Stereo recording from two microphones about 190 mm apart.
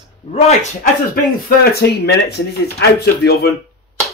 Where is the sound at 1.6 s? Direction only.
60° left (ahead or behind).